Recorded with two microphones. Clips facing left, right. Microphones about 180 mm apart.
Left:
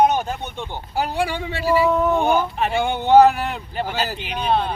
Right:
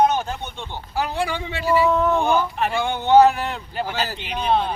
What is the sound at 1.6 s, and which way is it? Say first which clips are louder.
Speech: left 1 dB; 10° left (ahead or behind).